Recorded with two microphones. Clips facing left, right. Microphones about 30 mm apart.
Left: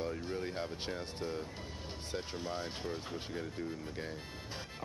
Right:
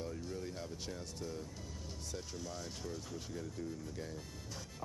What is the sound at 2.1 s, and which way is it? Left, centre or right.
Speech, left.